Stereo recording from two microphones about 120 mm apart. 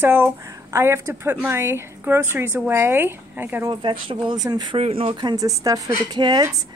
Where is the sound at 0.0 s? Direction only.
20° right (ahead or behind).